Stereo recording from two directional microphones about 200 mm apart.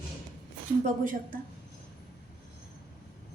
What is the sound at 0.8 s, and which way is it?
Speech, 40° right (ahead or behind).